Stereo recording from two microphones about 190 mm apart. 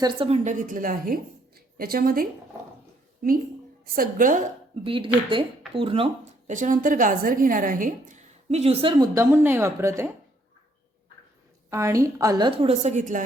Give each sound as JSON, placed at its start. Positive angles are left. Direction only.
{"t": 0.0, "sound": "speech", "side_deg": -25}
{"t": 0.4, "sound": "a woman's voice", "side_deg": -45}
{"t": 3.9, "sound": "a woman's voice", "side_deg": -50}
{"t": 4.8, "sound": "speech", "side_deg": -25}
{"t": 6.5, "sound": "a woman's voice", "side_deg": -45}
{"t": 9.1, "sound": "speech", "side_deg": -10}
{"t": 11.7, "sound": "speech", "side_deg": -15}